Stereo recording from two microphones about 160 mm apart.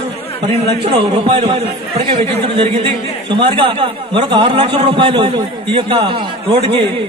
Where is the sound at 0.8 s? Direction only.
35° right (ahead or behind).